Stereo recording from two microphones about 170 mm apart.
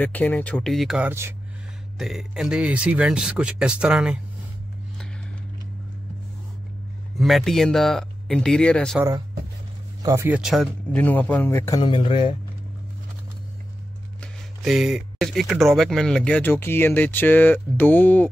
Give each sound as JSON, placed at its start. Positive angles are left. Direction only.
{"t": 0.0, "sound": "speech", "side_deg": 10}
{"t": 2.0, "sound": "speech", "side_deg": 0}
{"t": 7.2, "sound": "speech", "side_deg": 0}
{"t": 10.0, "sound": "speech", "side_deg": -15}
{"t": 11.8, "sound": "speech", "side_deg": 30}
{"t": 14.2, "sound": "speech", "side_deg": 0}